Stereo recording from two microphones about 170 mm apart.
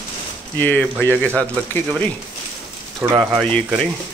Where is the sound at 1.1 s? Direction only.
15° right (ahead or behind).